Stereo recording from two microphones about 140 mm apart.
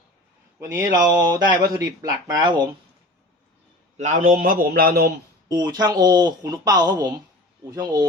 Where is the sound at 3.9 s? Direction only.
60° right (ahead or behind); by 5.1 s 90° right.